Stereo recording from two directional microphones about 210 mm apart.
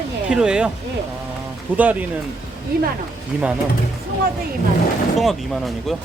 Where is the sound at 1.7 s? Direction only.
5° right (ahead or behind).